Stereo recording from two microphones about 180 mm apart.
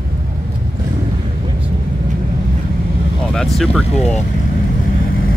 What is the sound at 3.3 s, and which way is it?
Speech, centre (ahead or behind).